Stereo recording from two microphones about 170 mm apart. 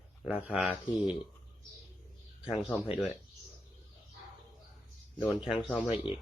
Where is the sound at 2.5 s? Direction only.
Centre (ahead or behind).